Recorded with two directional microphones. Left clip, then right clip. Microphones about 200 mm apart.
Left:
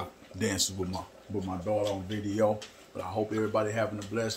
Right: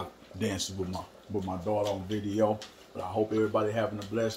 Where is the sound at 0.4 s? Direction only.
25° left (ahead or behind).